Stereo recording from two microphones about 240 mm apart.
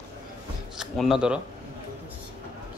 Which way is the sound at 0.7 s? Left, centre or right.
Centre.